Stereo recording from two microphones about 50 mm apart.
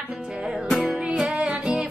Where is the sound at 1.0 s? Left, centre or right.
Right.